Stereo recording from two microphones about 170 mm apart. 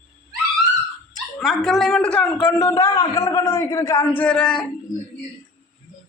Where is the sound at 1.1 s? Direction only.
Centre (ahead or behind).